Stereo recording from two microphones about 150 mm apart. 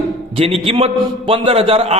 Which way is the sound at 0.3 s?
40° right (ahead or behind).